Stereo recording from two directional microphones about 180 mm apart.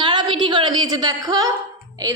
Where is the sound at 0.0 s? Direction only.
25° right (ahead or behind).